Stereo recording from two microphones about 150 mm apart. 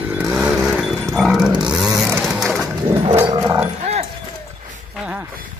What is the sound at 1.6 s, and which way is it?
Chainsaw, 5° right (ahead or behind).